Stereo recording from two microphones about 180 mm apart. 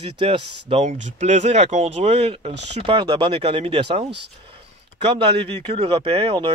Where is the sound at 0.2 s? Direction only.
30° right (ahead or behind).